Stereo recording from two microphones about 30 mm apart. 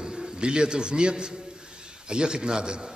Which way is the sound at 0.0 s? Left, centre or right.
Centre.